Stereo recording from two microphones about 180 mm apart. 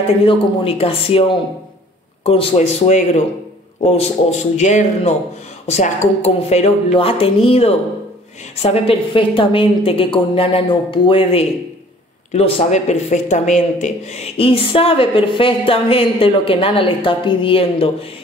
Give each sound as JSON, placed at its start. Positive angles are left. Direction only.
{"t": 0.2, "sound": "a woman's voice", "side_deg": 30}